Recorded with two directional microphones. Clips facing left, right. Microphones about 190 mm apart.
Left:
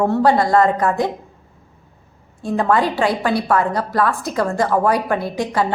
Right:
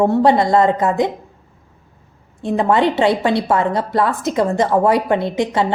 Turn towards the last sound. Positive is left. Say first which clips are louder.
# right 2 dB
turn(degrees=-25)  # may be behind; listen again after turning